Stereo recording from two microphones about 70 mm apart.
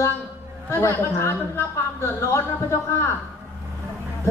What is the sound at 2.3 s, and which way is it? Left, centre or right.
Speech, left.